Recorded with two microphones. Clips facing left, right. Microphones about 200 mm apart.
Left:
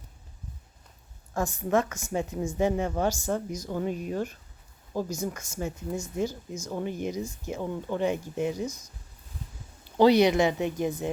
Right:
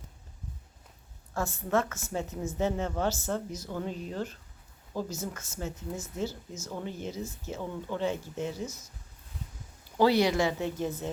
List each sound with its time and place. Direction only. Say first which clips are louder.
1.3 s a woman's voice: left 3 dB; 15° left (ahead or behind)
10.0 s a woman's voice: left 4 dB; 20° left (ahead or behind)